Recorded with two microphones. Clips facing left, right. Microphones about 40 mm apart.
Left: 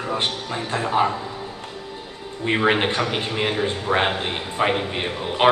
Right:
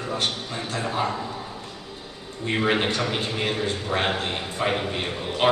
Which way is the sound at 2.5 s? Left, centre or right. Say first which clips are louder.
Left 3 dB; left.